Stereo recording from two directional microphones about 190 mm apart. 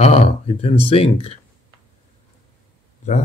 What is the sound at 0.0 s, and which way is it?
Speech, 35° left (ahead or behind).